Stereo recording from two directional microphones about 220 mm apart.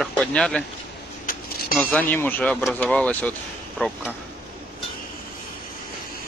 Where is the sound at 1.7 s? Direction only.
5° left (ahead or behind).